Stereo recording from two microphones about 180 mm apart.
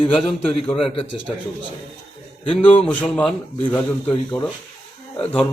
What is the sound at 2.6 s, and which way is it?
Speech, 10° left (ahead or behind).